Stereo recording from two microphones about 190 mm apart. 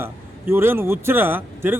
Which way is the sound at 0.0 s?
10° right (ahead or behind).